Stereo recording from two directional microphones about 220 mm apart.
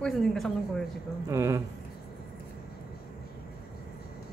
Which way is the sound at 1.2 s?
15° right (ahead or behind).